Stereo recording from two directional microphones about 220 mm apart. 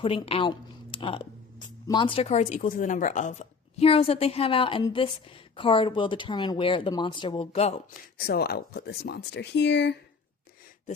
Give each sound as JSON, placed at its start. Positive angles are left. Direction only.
{"t": 0.0, "sound": "speech", "side_deg": 25}
{"t": 8.2, "sound": "speech", "side_deg": 45}